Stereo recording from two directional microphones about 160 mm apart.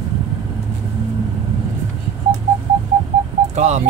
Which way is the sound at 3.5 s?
45° right (ahead or behind).